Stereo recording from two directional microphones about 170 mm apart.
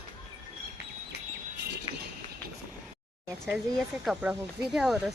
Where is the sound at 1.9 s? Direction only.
35° left (ahead or behind).